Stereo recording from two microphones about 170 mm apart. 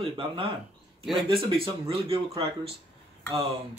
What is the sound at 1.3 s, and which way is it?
Speech, 35° right (ahead or behind).